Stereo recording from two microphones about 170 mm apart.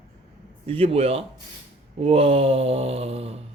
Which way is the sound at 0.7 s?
35° right (ahead or behind).